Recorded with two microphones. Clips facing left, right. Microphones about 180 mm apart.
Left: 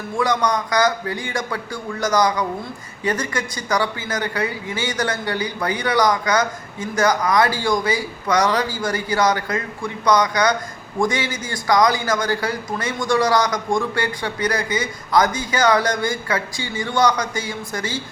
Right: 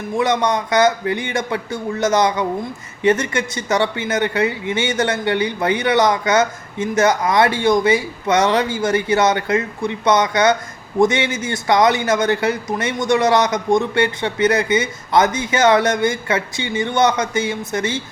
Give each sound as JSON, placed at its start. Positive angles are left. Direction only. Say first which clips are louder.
{"t": 0.2, "sound": "speech", "louder": "right 2 dB", "side_deg": -25}